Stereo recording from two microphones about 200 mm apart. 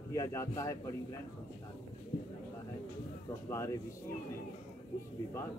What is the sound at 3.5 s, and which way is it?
Speech, 15° left (ahead or behind).